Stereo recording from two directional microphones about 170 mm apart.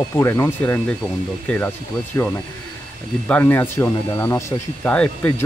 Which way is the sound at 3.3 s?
10° left (ahead or behind).